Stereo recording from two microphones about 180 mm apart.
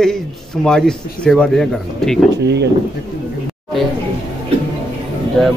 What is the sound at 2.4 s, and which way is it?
Speech, 70° right (ahead or behind).